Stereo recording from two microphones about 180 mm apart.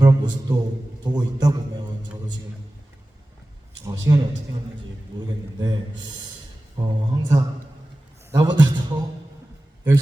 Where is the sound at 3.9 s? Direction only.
20° right (ahead or behind).